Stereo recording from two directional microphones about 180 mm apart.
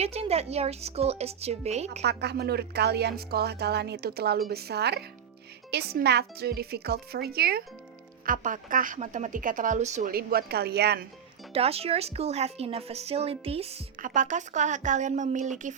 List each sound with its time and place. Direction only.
0.0 s speech: 35° right (ahead or behind)
2.0 s a woman's voice: 65° right (ahead or behind)
8.3 s a woman's voice: 50° right (ahead or behind)
10.1 s a woman's voice: 55° right (ahead or behind)
11.5 s speech: 35° right (ahead or behind)
14.0 s a woman's voice: 45° right (ahead or behind)